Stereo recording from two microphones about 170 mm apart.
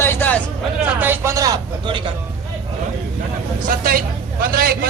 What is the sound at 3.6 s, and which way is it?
A man's voice, 55° right (ahead or behind).